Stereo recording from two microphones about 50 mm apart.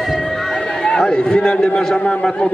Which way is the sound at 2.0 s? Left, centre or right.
Left.